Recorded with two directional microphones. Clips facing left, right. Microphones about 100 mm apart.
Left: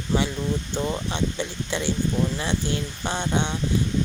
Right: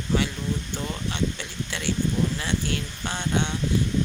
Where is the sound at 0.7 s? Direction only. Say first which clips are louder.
Left 4 dB; 25° left (ahead or behind).